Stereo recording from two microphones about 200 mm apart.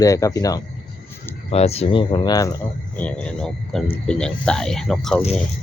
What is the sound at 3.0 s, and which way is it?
Speech, 5° left (ahead or behind).